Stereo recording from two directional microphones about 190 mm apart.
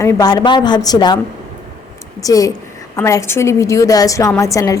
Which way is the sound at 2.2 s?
20° left (ahead or behind).